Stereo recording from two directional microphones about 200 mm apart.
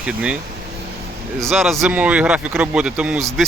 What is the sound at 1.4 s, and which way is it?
Speech, centre (ahead or behind).